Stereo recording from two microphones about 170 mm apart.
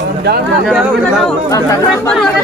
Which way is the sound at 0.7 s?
Centre (ahead or behind).